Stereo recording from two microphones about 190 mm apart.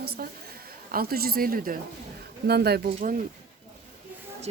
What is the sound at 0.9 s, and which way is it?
A woman's voice, 50° right (ahead or behind).